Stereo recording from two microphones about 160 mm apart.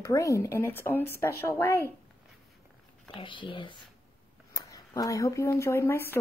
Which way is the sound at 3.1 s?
30° left (ahead or behind).